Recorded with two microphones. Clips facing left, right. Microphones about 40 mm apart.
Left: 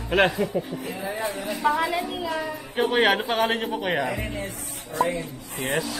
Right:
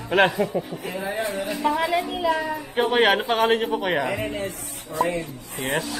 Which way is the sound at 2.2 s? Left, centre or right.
Centre.